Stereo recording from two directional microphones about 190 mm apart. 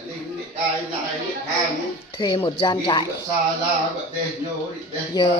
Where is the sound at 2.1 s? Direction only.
25° left (ahead or behind).